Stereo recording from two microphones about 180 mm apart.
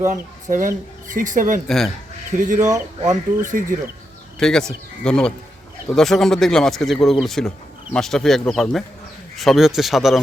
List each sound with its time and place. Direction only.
0.1 s speech: 45° right (ahead or behind)
1.6 s speech: centre (ahead or behind)
2.4 s speech: 45° right (ahead or behind)
2.6 s speech: 20° right (ahead or behind)
3.4 s speech: 45° right (ahead or behind)
4.4 s speech: 5° left (ahead or behind)